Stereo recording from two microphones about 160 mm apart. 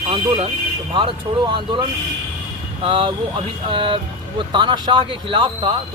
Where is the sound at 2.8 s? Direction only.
35° right (ahead or behind).